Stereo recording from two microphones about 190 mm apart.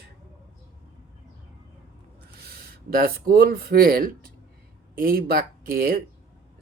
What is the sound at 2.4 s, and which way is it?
Speech, 50° right (ahead or behind).